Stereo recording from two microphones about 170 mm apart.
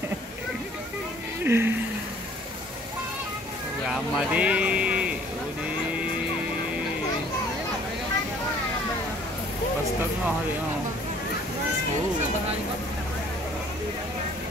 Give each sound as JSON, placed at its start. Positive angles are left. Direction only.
{"t": 1.4, "sound": "speech", "side_deg": -15}
{"t": 3.9, "sound": "speech", "side_deg": -5}